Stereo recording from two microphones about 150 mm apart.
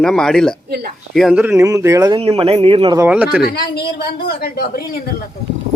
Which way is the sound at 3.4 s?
90° left.